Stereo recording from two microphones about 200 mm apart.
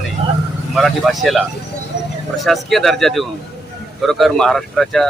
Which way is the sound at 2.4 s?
Centre (ahead or behind).